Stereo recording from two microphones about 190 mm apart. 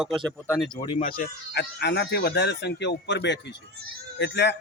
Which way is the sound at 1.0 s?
50° left (ahead or behind).